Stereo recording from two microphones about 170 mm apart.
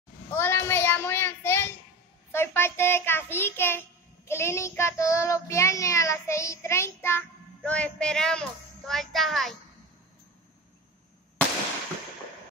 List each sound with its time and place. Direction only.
0.3 s child singing: 15° left (ahead or behind)